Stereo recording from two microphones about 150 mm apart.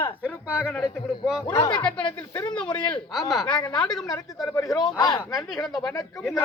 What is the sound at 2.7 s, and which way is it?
Speech, 5° left (ahead or behind).